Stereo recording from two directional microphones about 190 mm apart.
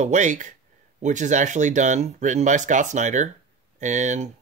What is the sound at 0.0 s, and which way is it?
Speech, 40° right (ahead or behind).